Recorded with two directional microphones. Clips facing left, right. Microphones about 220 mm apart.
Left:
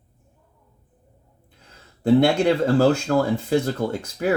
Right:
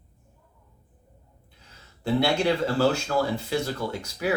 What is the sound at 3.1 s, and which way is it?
Speech, 50° left (ahead or behind).